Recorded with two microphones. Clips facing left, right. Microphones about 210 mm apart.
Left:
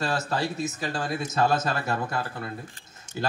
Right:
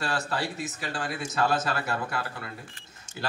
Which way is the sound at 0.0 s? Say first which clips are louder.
Left 3 dB; 40° left (ahead or behind).